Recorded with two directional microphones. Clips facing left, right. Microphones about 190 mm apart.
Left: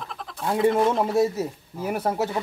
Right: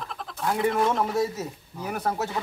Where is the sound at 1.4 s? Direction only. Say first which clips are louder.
Left 5 dB; 30° left (ahead or behind).